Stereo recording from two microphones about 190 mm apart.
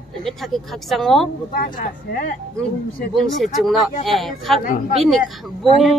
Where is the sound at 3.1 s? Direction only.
Centre (ahead or behind).